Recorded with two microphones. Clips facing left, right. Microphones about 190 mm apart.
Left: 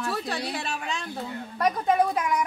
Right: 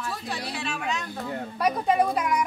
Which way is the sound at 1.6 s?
Centre (ahead or behind).